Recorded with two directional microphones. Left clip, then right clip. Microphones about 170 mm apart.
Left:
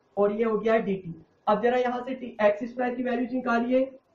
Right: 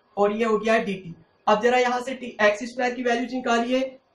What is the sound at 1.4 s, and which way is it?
Speech, 10° left (ahead or behind).